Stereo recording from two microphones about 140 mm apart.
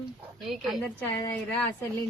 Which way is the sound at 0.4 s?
Centre (ahead or behind).